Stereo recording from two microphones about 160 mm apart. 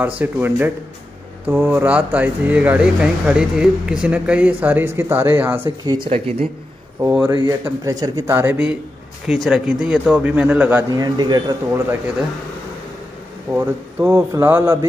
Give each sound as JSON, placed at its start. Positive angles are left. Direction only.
{"t": 0.2, "sound": "speech", "side_deg": -10}
{"t": 6.0, "sound": "speech", "side_deg": -40}
{"t": 7.0, "sound": "speech", "side_deg": -15}
{"t": 10.9, "sound": "speech", "side_deg": -25}
{"t": 13.5, "sound": "speech", "side_deg": -15}